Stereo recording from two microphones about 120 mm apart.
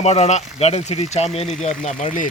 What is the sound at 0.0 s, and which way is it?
Speech, 65° left (ahead or behind).